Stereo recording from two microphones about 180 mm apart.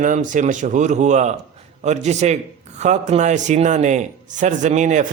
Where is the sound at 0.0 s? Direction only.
45° right (ahead or behind).